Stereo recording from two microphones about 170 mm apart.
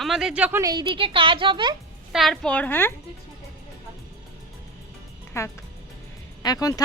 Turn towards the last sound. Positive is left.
turn(degrees=20)  # may be behind; listen again after turning